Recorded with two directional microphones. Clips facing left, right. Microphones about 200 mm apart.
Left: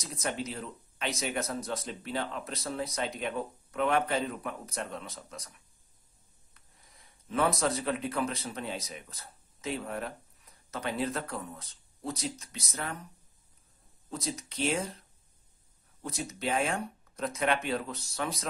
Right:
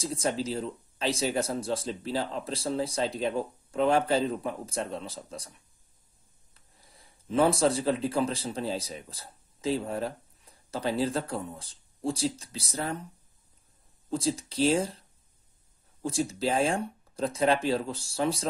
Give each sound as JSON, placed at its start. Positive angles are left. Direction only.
{"t": 0.0, "sound": "speech", "side_deg": -30}
{"t": 6.5, "sound": "speech", "side_deg": -30}
{"t": 14.1, "sound": "speech", "side_deg": -30}